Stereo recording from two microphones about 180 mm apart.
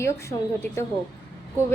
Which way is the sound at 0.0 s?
15° left (ahead or behind).